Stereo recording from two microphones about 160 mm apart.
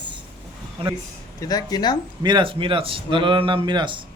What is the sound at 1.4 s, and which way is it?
Speech, 25° left (ahead or behind).